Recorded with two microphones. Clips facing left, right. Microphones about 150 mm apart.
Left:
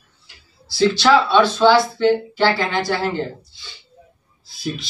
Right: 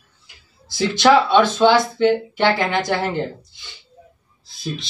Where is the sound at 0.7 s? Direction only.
20° right (ahead or behind).